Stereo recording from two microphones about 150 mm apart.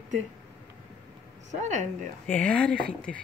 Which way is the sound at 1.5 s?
50° right (ahead or behind).